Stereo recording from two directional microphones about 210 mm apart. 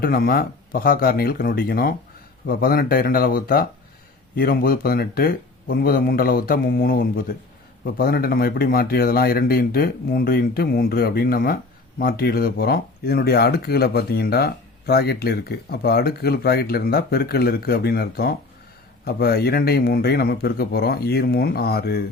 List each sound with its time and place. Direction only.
0.0 s speech: 45° left (ahead or behind)